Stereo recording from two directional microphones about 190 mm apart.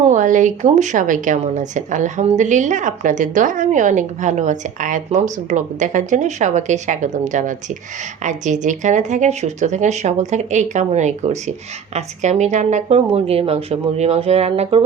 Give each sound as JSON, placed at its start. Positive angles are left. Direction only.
{"t": 0.1, "sound": "speech", "side_deg": -40}